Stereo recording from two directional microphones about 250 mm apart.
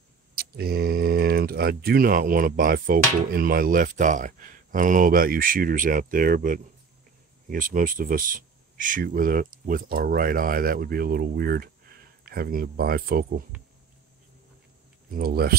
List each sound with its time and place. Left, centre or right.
0.4 s speech: right
15.0 s speech: right